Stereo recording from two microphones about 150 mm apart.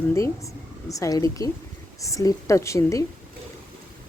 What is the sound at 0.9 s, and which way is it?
A woman's voice, 25° left (ahead or behind).